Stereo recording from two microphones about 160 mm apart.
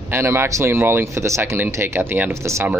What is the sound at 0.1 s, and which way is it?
Speech, 15° right (ahead or behind).